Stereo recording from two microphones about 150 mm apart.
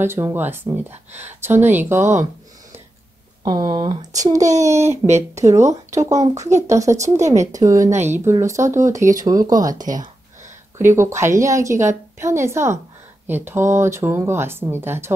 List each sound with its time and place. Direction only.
0.0 s speech: 15° right (ahead or behind)
3.4 s speech: 30° right (ahead or behind)
5.0 s speech: 50° right (ahead or behind)
5.4 s speech: 20° right (ahead or behind)